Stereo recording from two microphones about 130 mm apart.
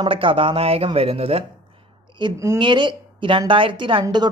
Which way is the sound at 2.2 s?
35° right (ahead or behind).